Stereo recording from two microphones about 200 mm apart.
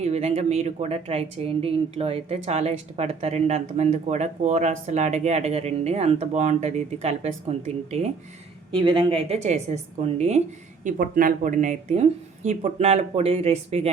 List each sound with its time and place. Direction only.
0.0 s speech: 35° right (ahead or behind)